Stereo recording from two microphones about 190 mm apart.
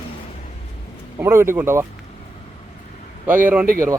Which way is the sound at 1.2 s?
15° right (ahead or behind).